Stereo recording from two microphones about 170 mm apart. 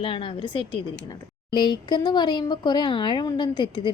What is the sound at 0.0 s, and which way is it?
A woman's voice, 30° left (ahead or behind).